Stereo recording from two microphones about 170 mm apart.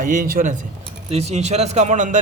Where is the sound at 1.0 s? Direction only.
40° right (ahead or behind).